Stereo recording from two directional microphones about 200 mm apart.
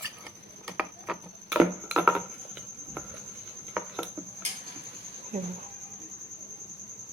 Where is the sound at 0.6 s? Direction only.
Centre (ahead or behind).